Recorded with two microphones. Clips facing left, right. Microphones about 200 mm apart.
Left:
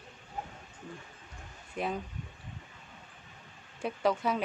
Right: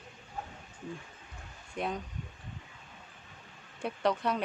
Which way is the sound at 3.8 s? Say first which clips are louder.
Left 1 dB; 5° left (ahead or behind).